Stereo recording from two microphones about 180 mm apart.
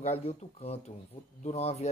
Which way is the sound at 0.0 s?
35° left (ahead or behind).